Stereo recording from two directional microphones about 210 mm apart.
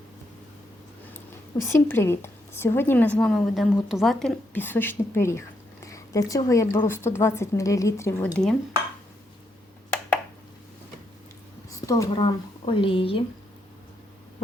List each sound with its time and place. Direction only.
1.6 s a woman's voice: 10° left (ahead or behind)
11.9 s speech: 20° left (ahead or behind)